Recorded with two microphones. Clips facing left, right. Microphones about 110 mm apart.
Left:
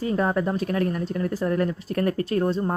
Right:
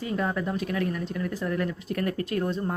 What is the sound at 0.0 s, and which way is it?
A woman's voice, 40° left (ahead or behind).